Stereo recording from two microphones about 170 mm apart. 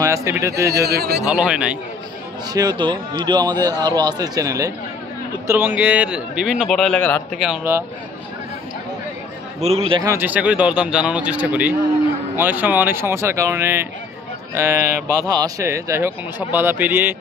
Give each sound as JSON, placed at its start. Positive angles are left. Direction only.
{"t": 0.0, "sound": "speech", "side_deg": -15}
{"t": 0.8, "sound": "a man's voice", "side_deg": -70}
{"t": 1.3, "sound": "a man's voice", "side_deg": -5}
{"t": 2.5, "sound": "a man's voice", "side_deg": -25}
{"t": 7.3, "sound": "a man's voice", "side_deg": -5}
{"t": 9.6, "sound": "a man's voice", "side_deg": -35}
{"t": 10.0, "sound": "speech", "side_deg": -10}